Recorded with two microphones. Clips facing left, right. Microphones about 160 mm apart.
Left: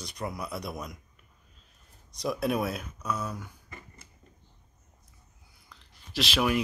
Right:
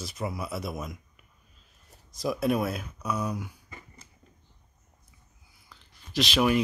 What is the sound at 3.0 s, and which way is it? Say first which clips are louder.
Speech: right 3 dB; 10° right (ahead or behind).